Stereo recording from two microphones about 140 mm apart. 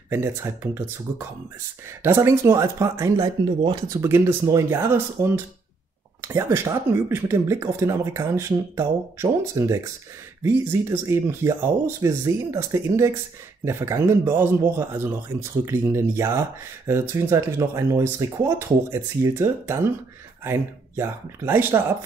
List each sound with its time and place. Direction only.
0.1 s speech: 20° right (ahead or behind)